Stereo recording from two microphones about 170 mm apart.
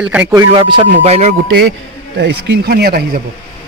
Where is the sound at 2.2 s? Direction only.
80° right.